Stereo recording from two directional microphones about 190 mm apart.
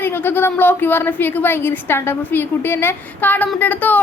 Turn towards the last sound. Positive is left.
turn(degrees=10)  # may be behind; listen again after turning